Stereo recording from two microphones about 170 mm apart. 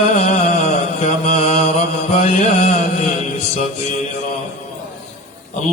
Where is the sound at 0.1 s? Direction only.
40° left (ahead or behind).